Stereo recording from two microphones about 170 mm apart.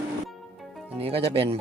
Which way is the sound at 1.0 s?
35° right (ahead or behind).